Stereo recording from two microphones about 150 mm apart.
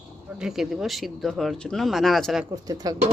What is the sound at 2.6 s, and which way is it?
Speech, 25° right (ahead or behind).